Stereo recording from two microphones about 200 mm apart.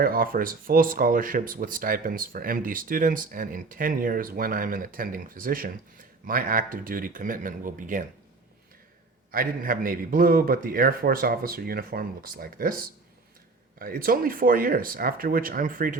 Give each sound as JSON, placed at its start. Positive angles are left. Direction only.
{"t": 0.0, "sound": "speech", "side_deg": -45}
{"t": 9.3, "sound": "speech", "side_deg": -45}
{"t": 13.7, "sound": "speech", "side_deg": -45}